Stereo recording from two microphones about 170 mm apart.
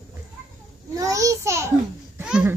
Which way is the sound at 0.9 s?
20° right (ahead or behind).